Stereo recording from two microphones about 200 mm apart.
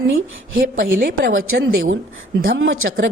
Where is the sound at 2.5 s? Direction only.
75° right (ahead or behind).